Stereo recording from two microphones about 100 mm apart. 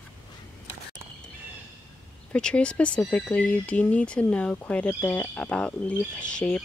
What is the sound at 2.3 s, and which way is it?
Speech, 10° left (ahead or behind).